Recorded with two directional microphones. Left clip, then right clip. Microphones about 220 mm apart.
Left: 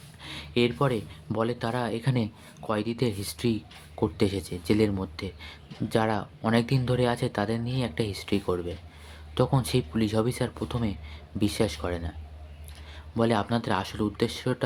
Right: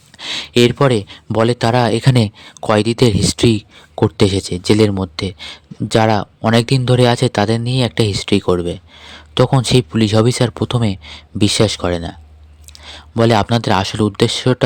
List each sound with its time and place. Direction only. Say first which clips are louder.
0.2 s speech: right 13 dB; 45° right (ahead or behind)